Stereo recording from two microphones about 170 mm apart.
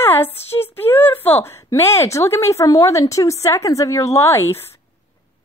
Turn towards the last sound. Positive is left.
turn(degrees=15)  # may be behind; listen again after turning